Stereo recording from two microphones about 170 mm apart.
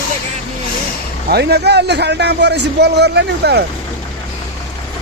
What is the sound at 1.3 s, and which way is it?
A man's voice, 75° right (ahead or behind).